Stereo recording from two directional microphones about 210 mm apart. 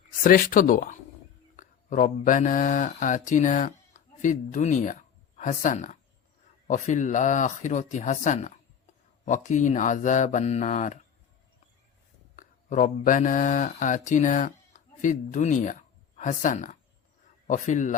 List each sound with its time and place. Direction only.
0.2 s speech: 40° left (ahead or behind)
12.4 s speech: 35° left (ahead or behind)